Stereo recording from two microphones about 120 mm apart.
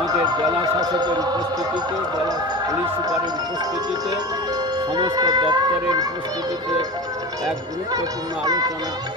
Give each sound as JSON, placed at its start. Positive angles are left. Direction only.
{"t": 0.0, "sound": "a man's voice", "side_deg": -35}
{"t": 4.9, "sound": "speech", "side_deg": -35}
{"t": 8.5, "sound": "speech", "side_deg": -30}